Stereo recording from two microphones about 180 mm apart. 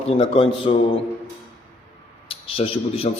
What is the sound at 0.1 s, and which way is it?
Speech, 30° left (ahead or behind).